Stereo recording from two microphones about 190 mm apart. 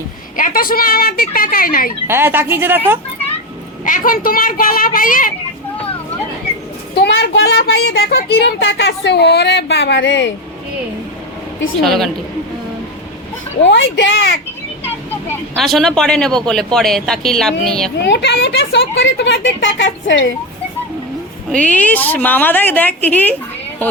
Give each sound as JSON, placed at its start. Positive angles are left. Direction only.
{"t": 0.3, "sound": "a woman's voice", "side_deg": 45}
{"t": 2.0, "sound": "a woman's voice", "side_deg": -10}
{"t": 3.8, "sound": "a woman's voice", "side_deg": 45}
{"t": 6.9, "sound": "a child's voice", "side_deg": 60}
{"t": 11.8, "sound": "speech", "side_deg": 0}
{"t": 13.7, "sound": "speech", "side_deg": 70}
{"t": 14.8, "sound": "vehicle", "side_deg": 10}
{"t": 15.6, "sound": "speech", "side_deg": 0}
{"t": 17.9, "sound": "speech", "side_deg": 65}
{"t": 21.5, "sound": "a woman's voice", "side_deg": 5}